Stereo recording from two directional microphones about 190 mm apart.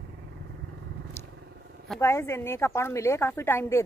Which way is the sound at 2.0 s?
15° left (ahead or behind).